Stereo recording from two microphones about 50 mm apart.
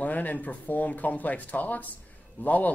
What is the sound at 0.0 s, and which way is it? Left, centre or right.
Speech, left.